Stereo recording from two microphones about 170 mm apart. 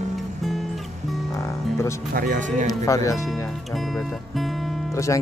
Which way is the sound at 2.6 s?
20° left (ahead or behind).